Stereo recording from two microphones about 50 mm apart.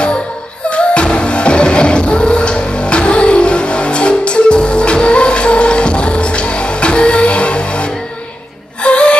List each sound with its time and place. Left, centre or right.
0.7 s music: left
8.8 s gasp: left